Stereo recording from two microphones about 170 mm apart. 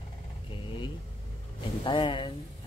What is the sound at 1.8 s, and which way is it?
Speech, 30° left (ahead or behind).